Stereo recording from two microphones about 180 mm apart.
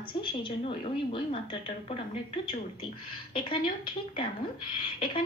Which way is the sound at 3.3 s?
30° left (ahead or behind).